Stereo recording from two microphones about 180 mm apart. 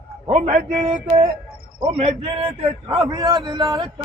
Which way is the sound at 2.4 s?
25° right (ahead or behind).